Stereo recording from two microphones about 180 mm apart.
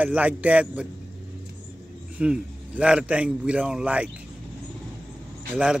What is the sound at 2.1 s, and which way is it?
A man's voice, 5° right (ahead or behind).